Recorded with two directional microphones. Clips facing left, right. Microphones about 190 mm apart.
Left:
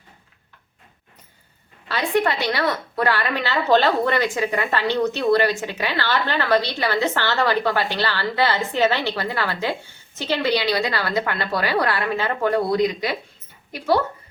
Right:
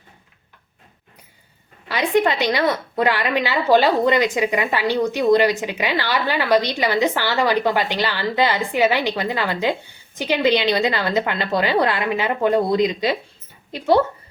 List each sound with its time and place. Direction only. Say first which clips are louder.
1.9 s a woman's voice: right 3 dB; 15° right (ahead or behind)